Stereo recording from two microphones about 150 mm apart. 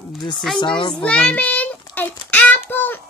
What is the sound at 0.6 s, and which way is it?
Speech, 30° left (ahead or behind).